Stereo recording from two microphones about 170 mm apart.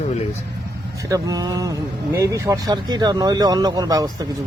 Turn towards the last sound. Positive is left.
turn(degrees=-20)  # may be behind; listen again after turning